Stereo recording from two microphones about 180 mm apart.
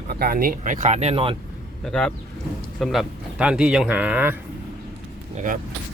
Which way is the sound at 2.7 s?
Centre (ahead or behind).